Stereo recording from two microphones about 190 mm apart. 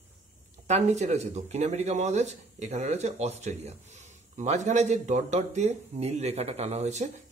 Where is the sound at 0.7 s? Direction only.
35° right (ahead or behind).